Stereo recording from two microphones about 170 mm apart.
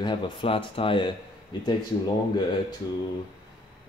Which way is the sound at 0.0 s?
30° left (ahead or behind).